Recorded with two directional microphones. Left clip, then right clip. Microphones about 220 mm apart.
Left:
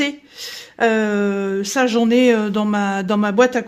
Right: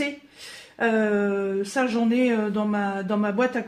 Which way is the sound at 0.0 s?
55° left (ahead or behind).